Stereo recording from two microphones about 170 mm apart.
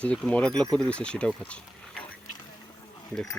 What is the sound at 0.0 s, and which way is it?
Speech, 5° left (ahead or behind).